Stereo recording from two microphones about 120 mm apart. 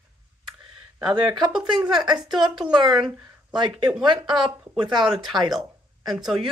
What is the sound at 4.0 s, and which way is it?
Speech, 40° right (ahead or behind).